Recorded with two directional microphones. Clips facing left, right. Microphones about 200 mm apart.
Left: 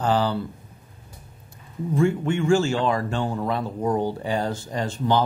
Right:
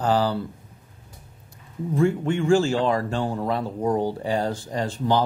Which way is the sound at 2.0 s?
35° right (ahead or behind).